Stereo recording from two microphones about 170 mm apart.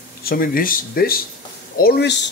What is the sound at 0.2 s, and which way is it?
Speech, 60° left (ahead or behind).